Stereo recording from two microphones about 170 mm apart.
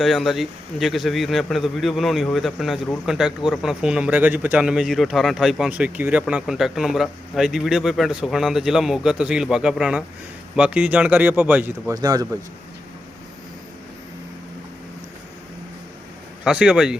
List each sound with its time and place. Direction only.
0.0 s speech: centre (ahead or behind)
11.9 s speech: 20° right (ahead or behind)
16.4 s speech: 5° right (ahead or behind)